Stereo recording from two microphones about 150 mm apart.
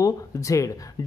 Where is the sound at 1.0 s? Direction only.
20° left (ahead or behind).